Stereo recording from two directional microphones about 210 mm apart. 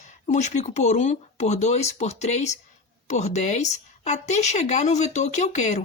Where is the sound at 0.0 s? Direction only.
35° left (ahead or behind).